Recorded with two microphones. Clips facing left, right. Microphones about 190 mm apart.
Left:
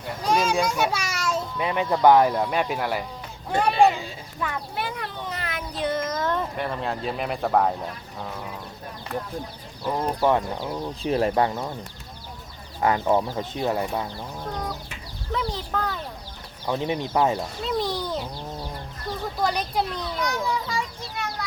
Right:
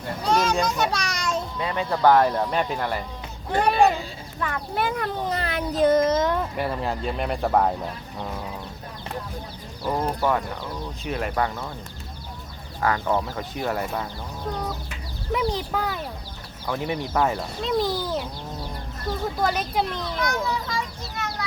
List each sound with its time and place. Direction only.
0.3 s children playing: 10° left (ahead or behind)
1.5 s speech: 15° left (ahead or behind)
4.4 s speech: 5° left (ahead or behind)
4.7 s speech: 45° right (ahead or behind)
6.1 s a child's voice: 25° right (ahead or behind)
6.3 s speech: 5° right (ahead or behind)
9.8 s speech: 5° right (ahead or behind)
10.2 s speech: 20° left (ahead or behind)
12.8 s speech: 20° left (ahead or behind)
15.3 s speech: 15° right (ahead or behind)
16.6 s speech: 20° left (ahead or behind)
17.7 s speech: centre (ahead or behind)
19.4 s speech: centre (ahead or behind)
20.2 s speech: 15° left (ahead or behind)